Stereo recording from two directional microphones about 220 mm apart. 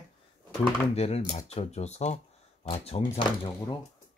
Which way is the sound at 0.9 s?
30° left (ahead or behind).